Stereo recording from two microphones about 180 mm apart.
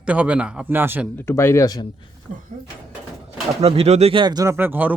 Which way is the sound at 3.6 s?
35° right (ahead or behind).